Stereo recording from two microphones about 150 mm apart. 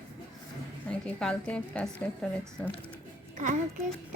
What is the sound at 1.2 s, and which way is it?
Speech, 5° left (ahead or behind).